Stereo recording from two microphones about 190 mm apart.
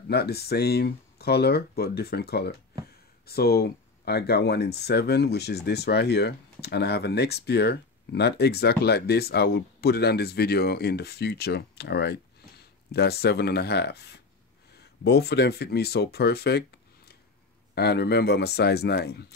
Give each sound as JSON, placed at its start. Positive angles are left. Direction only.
{"t": 0.1, "sound": "speech", "side_deg": 55}
{"t": 17.7, "sound": "speech", "side_deg": 60}